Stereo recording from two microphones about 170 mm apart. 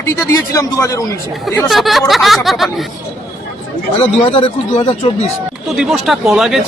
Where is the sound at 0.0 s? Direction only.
20° left (ahead or behind).